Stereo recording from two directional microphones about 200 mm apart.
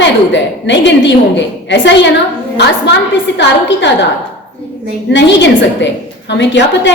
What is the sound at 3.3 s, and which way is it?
Speech, 65° left (ahead or behind).